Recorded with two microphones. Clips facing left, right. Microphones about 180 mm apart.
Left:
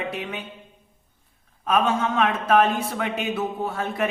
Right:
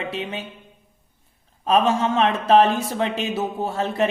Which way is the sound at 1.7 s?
30° right (ahead or behind).